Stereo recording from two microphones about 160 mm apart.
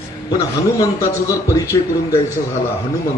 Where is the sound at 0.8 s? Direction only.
20° left (ahead or behind).